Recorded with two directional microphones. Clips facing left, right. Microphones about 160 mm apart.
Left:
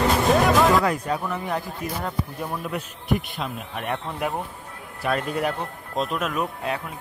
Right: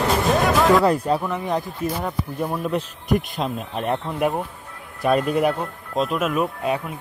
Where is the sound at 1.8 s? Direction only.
15° left (ahead or behind).